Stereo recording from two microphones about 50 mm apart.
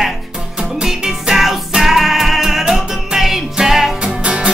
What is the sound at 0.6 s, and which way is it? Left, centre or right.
Music, centre.